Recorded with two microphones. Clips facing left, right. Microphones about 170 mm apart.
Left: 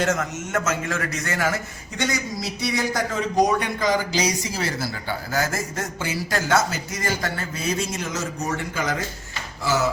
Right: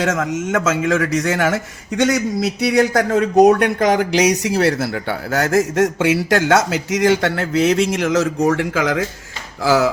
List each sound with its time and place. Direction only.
0.0 s a man's voice: 90° right